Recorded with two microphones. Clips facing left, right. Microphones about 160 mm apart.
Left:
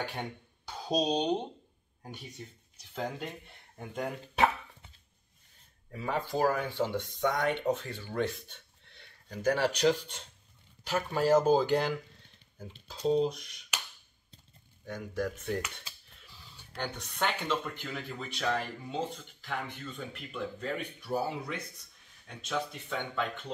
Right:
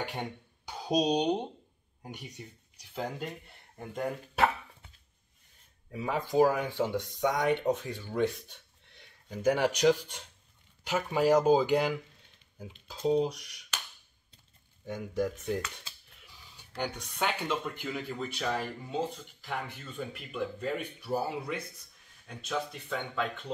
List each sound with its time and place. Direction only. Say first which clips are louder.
0.7 s speech: right 2 dB; 15° right (ahead or behind)
3.0 s speech: even; centre (ahead or behind)
15.1 s speech: right 2 dB; 5° right (ahead or behind)
16.2 s a sound: left 1 dB; 10° right (ahead or behind)
17.2 s speech: even; 10° right (ahead or behind)